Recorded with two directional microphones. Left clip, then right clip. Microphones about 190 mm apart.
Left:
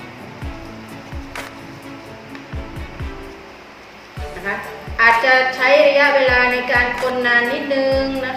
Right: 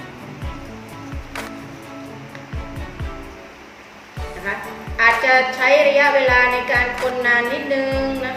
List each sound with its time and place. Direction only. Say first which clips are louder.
4.5 s a woman's voice: left 2 dB; centre (ahead or behind)